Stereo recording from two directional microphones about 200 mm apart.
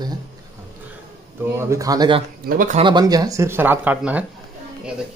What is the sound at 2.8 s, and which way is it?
Speech, 20° right (ahead or behind).